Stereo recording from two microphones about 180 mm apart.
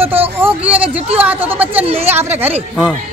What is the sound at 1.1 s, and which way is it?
A woman's voice, 10° right (ahead or behind).